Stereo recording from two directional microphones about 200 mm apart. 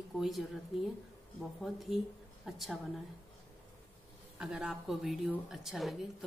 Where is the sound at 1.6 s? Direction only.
Centre (ahead or behind).